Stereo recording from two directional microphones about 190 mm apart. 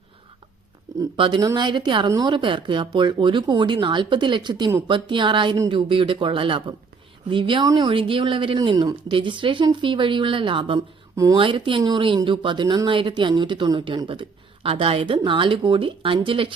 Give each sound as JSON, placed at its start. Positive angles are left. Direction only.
{"t": 1.1, "sound": "speech", "side_deg": -25}